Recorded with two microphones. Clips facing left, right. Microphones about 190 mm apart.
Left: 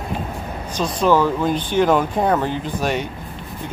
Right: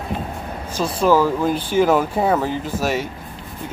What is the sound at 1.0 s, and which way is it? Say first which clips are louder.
Speech: right 1 dB; 5° right (ahead or behind).